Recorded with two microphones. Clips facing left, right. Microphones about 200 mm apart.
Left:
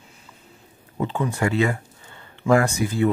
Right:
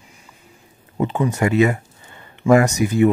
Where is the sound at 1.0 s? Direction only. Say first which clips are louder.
Right 4 dB; 20° right (ahead or behind).